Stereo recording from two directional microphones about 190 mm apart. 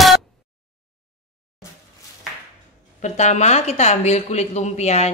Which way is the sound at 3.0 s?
40° left (ahead or behind).